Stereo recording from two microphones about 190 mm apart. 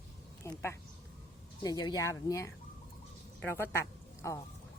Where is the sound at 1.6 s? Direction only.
20° left (ahead or behind).